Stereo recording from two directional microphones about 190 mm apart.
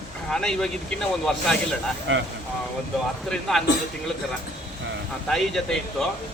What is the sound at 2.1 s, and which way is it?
Speech, 90° right.